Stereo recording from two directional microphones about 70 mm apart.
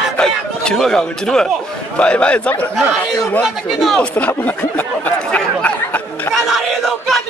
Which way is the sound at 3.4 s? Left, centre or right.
Centre.